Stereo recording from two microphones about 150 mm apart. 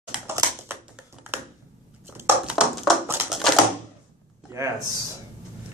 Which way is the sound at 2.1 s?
10° right (ahead or behind).